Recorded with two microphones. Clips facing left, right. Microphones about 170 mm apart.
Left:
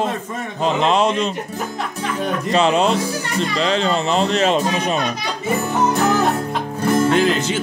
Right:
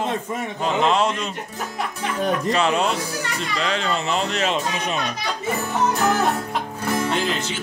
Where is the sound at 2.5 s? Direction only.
25° left (ahead or behind).